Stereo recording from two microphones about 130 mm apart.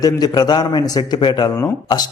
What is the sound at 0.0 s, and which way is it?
A man's voice, 30° left (ahead or behind).